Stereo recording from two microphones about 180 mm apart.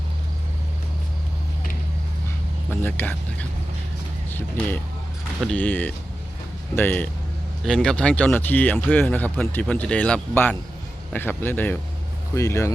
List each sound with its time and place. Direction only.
2.8 s speech: 10° left (ahead or behind)